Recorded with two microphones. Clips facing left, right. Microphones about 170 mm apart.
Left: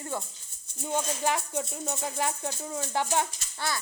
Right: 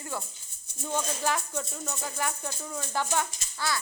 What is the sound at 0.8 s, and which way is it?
A child's voice, 15° left (ahead or behind).